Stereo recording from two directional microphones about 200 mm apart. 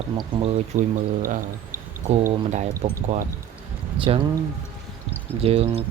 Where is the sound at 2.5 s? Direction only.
40° right (ahead or behind).